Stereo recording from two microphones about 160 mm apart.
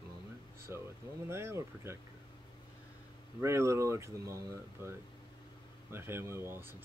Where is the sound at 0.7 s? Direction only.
15° right (ahead or behind).